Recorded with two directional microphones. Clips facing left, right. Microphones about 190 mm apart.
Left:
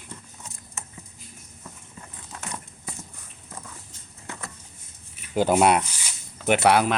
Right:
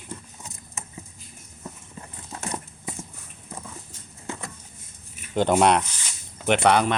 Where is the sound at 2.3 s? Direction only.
35° right (ahead or behind).